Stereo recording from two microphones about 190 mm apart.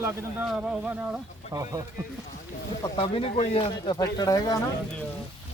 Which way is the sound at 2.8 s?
25° left (ahead or behind).